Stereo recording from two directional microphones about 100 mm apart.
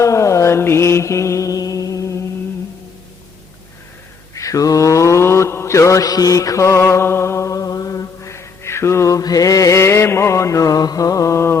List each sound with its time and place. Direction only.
0.0 s mantra: 30° left (ahead or behind)
4.4 s mantra: 35° left (ahead or behind)